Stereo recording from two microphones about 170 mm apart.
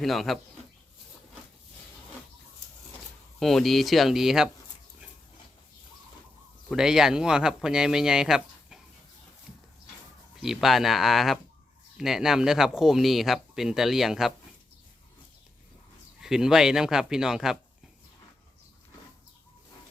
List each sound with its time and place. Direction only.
0.0 s speech: centre (ahead or behind)
3.4 s speech: centre (ahead or behind)
6.7 s speech: 5° right (ahead or behind)
10.4 s speech: centre (ahead or behind)
16.2 s speech: 5° right (ahead or behind)